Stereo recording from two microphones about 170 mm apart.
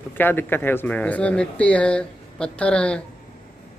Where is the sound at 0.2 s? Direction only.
10° left (ahead or behind).